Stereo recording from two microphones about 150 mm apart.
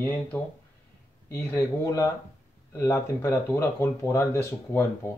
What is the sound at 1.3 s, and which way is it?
Speech, 20° left (ahead or behind).